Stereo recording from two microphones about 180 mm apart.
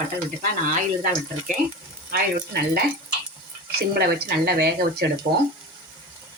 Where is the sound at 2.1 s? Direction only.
60° right (ahead or behind).